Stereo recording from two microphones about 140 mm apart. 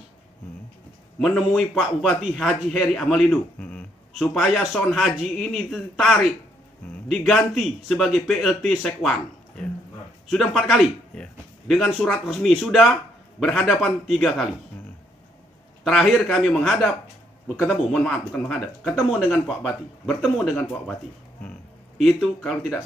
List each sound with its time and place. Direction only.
1.2 s a man's voice: centre (ahead or behind)
10.3 s a man's voice: centre (ahead or behind)
15.8 s a man's voice: 5° left (ahead or behind)
22.0 s a man's voice: centre (ahead or behind)